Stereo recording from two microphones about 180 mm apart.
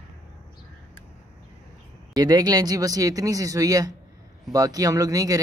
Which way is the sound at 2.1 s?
20° right (ahead or behind).